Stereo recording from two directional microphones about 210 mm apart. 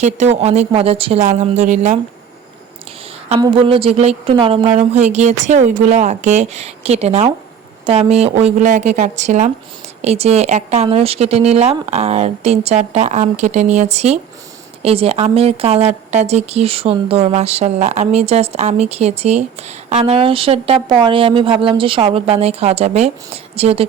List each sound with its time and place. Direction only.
0.0 s a woman's voice: 35° right (ahead or behind)
3.4 s a woman's voice: 25° right (ahead or behind)